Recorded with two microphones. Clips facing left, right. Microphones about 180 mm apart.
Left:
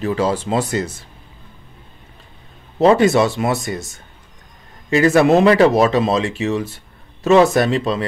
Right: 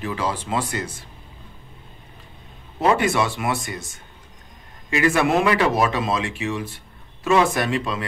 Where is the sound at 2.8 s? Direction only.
30° left (ahead or behind).